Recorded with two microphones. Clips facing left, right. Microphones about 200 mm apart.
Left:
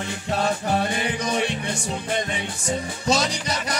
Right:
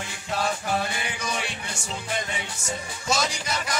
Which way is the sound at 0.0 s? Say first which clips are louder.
Left 4 dB; 40° left (ahead or behind).